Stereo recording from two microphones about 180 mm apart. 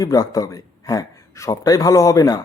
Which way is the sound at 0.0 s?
20° left (ahead or behind).